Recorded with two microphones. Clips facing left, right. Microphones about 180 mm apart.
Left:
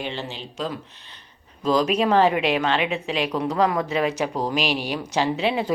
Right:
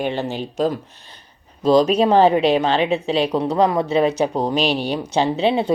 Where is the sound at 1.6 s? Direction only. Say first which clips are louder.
Right 6 dB; 30° right (ahead or behind).